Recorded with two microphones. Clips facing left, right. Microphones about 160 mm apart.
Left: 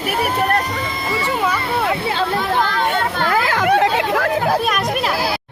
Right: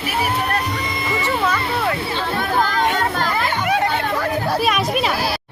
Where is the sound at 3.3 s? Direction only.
90° left.